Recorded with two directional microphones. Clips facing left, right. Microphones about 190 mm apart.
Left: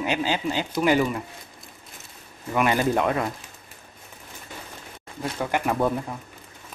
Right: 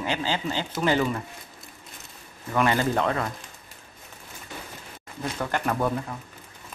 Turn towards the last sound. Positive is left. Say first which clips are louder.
# left 2 dB
turn(degrees=10)  # may be behind; listen again after turning